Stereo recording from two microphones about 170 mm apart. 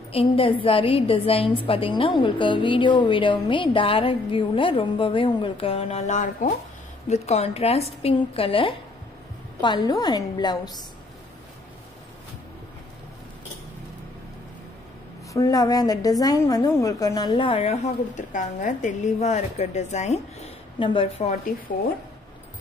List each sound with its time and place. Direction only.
0.1 s a woman's voice: 35° left (ahead or behind)
15.3 s a woman's voice: 20° left (ahead or behind); by 20.5 s 40° left (ahead or behind)
20.8 s a woman's voice: 30° left (ahead or behind)